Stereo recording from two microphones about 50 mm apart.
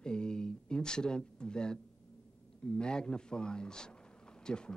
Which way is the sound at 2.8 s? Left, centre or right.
Centre.